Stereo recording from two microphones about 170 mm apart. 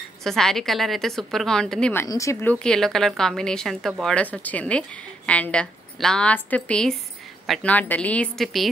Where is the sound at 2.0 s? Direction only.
20° left (ahead or behind).